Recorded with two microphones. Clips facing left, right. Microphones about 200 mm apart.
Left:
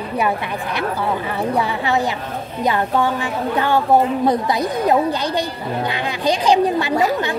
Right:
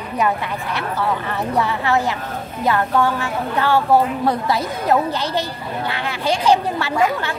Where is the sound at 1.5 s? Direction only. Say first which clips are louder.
Right 2 dB; 15° left (ahead or behind).